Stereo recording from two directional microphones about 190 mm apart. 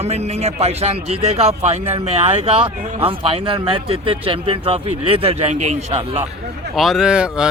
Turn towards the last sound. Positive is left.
turn(degrees=-5)  # may be behind; listen again after turning